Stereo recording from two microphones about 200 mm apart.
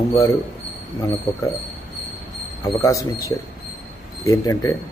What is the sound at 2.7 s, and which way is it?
Speech, 15° left (ahead or behind).